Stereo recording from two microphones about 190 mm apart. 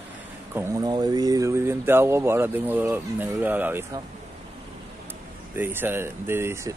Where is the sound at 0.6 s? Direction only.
20° right (ahead or behind).